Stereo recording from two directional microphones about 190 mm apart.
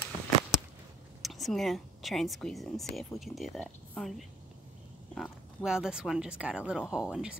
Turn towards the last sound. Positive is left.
turn(degrees=-5)  # may be behind; listen again after turning